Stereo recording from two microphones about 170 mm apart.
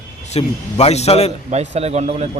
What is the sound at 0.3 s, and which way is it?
Speech, 40° left (ahead or behind).